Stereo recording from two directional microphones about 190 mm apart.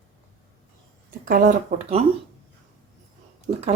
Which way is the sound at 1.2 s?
45° right (ahead or behind).